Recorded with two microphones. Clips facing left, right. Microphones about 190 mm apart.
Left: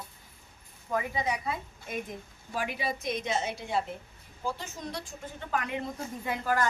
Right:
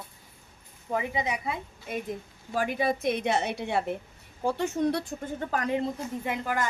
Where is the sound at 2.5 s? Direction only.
45° right (ahead or behind).